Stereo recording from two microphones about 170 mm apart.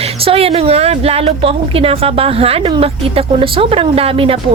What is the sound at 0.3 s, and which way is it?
A woman's voice, 35° right (ahead or behind).